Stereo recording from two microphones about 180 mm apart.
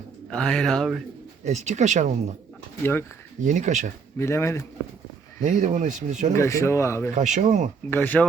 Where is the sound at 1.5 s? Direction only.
40° right (ahead or behind).